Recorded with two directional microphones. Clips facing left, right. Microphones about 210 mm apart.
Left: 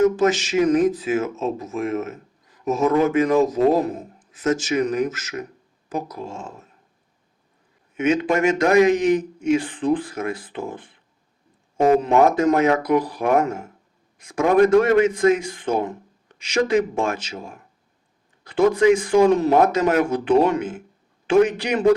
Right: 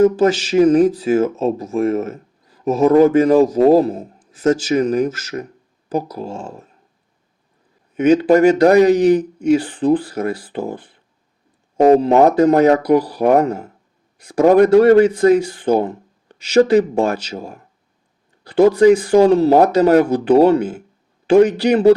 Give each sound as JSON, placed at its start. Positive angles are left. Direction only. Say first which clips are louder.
{"t": 0.0, "sound": "speech", "louder": "right 4 dB", "side_deg": -35}
{"t": 7.9, "sound": "speech", "louder": "right 8 dB", "side_deg": -35}